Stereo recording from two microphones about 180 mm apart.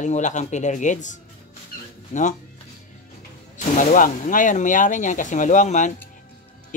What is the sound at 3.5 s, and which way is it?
Speech, 45° left (ahead or behind).